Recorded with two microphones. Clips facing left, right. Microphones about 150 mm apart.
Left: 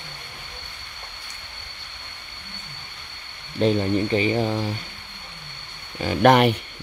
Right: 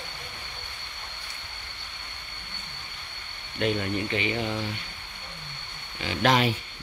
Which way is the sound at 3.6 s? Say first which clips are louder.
Left 7 dB; 35° left (ahead or behind).